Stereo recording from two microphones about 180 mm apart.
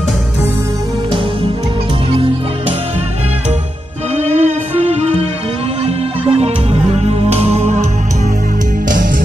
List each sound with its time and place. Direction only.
4.2 s music: 40° right (ahead or behind)
6.4 s music: 35° right (ahead or behind)